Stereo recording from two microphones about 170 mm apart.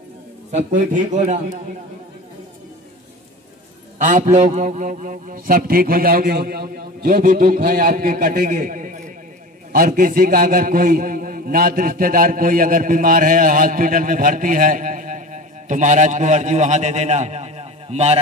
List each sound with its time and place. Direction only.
0.5 s speech: 45° right (ahead or behind)
4.0 s a man's voice: 45° right (ahead or behind)